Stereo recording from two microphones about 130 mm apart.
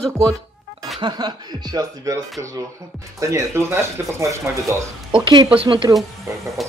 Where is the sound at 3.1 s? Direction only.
25° right (ahead or behind).